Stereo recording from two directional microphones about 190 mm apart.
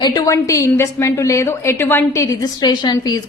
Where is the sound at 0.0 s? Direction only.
20° left (ahead or behind).